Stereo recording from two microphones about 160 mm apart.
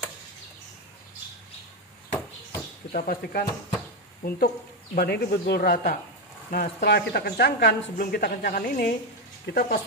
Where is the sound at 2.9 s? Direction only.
65° left (ahead or behind).